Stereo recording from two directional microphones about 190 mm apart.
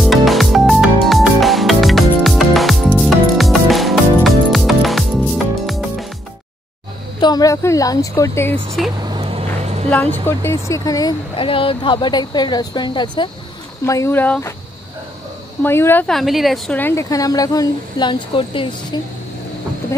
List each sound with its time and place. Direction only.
0.0 s music: centre (ahead or behind)
7.2 s speech: 20° left (ahead or behind)
9.0 s vehicle: 25° right (ahead or behind)
10.1 s speech: 10° left (ahead or behind)
15.6 s speech: 10° left (ahead or behind); by 18.9 s 25° left (ahead or behind)